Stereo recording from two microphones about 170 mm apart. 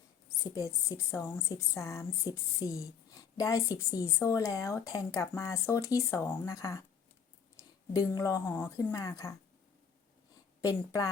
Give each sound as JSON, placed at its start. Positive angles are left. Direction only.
{"t": 0.4, "sound": "a woman's voice", "side_deg": 20}
{"t": 7.9, "sound": "speech", "side_deg": 20}
{"t": 10.6, "sound": "speech", "side_deg": 20}